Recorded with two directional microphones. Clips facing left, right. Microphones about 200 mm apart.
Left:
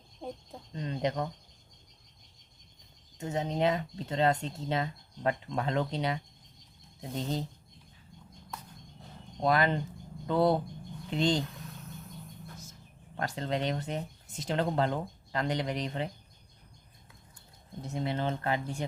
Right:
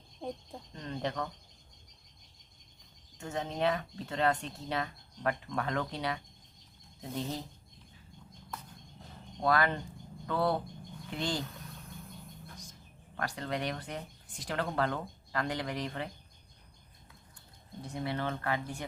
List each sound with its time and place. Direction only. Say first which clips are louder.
0.7 s speech: left 5 dB; 20° left (ahead or behind)
3.2 s speech: left 4 dB; 20° left (ahead or behind)
9.4 s speech: left 2 dB; 20° left (ahead or behind)
13.1 s speech: left 3 dB; 25° left (ahead or behind)
17.8 s speech: left 3 dB; 25° left (ahead or behind)